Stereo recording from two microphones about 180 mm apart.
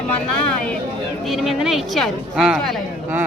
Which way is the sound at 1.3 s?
Centre (ahead or behind).